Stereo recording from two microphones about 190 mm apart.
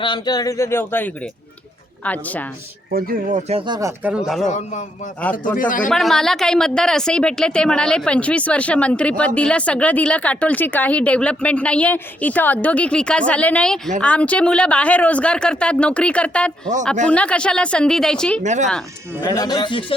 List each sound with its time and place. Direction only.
0.0 s speech: 25° left (ahead or behind); by 2.5 s 10° left (ahead or behind)
2.9 s speech: 45° right (ahead or behind)
3.7 s speech: 15° right (ahead or behind)
4.4 s a man's voice: 40° left (ahead or behind)
5.9 s speech: centre (ahead or behind)
18.4 s speech: 40° right (ahead or behind)
19.2 s speech: 15° left (ahead or behind)